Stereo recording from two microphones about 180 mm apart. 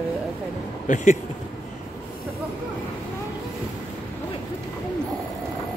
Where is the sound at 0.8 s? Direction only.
45° left (ahead or behind).